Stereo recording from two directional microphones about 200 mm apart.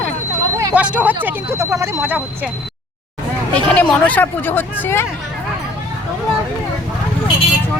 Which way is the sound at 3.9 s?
10° left (ahead or behind).